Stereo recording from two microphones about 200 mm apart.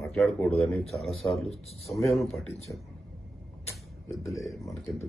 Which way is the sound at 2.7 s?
10° left (ahead or behind).